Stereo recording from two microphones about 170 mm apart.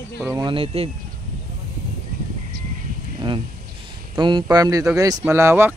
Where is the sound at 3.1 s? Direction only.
30° right (ahead or behind).